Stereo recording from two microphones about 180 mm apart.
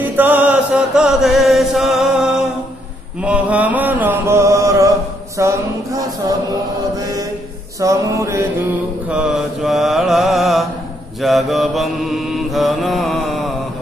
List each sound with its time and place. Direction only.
0.0 s chant: 10° right (ahead or behind)
3.2 s mantra: 5° right (ahead or behind)
5.4 s a sound: 15° right (ahead or behind)
7.0 s mantra: 20° right (ahead or behind)
7.8 s music: 15° right (ahead or behind)
9.1 s mantra: 5° right (ahead or behind)